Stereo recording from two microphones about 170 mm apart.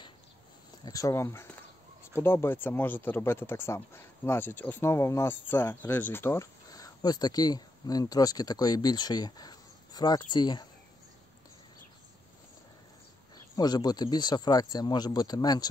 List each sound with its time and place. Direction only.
0.8 s speech: 20° left (ahead or behind)
13.6 s speech: 25° left (ahead or behind)